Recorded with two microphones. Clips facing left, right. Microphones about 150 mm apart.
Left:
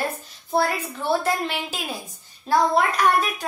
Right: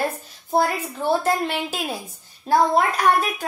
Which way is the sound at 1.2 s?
50° right (ahead or behind).